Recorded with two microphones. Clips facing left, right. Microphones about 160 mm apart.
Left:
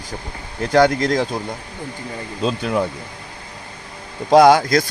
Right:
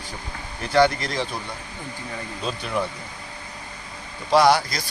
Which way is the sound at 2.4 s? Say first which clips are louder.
Left 7 dB; 65° left (ahead or behind).